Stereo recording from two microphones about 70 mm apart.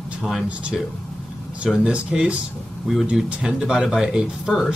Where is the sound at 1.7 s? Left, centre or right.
Centre.